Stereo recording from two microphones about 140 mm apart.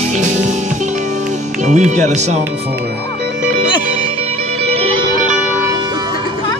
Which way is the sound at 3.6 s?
30° left (ahead or behind).